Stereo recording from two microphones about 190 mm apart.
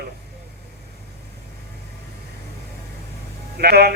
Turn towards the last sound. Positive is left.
turn(degrees=-55)  # may be behind; listen again after turning